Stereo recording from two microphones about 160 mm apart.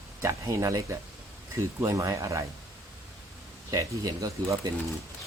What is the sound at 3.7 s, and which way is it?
Speech, 20° right (ahead or behind).